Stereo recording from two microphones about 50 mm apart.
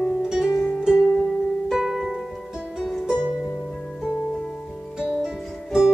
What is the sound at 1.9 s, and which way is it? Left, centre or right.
Music, centre.